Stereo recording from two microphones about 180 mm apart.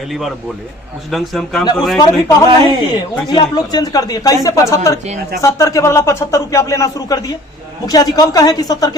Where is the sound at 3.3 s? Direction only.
25° left (ahead or behind).